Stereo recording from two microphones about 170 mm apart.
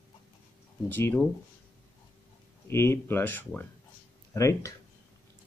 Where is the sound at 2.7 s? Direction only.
15° left (ahead or behind).